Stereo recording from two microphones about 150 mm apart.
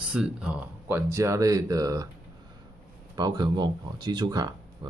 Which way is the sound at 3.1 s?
30° right (ahead or behind).